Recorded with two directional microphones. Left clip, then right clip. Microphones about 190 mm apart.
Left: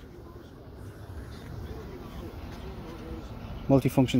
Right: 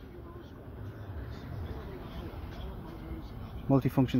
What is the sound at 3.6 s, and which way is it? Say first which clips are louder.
Speech: left 5 dB; 5° left (ahead or behind).